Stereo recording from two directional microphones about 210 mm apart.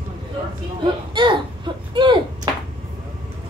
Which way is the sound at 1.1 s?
20° right (ahead or behind).